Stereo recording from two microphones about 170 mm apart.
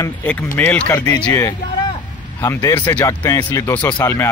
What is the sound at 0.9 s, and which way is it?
Speech, 20° left (ahead or behind).